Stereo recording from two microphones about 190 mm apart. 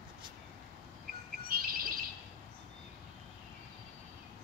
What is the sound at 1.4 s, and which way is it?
Bird, 50° right (ahead or behind).